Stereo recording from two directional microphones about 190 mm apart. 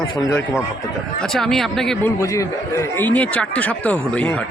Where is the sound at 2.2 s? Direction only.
15° left (ahead or behind).